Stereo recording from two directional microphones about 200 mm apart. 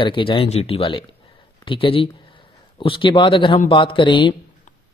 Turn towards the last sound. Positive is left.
turn(degrees=25)  # may be behind; listen again after turning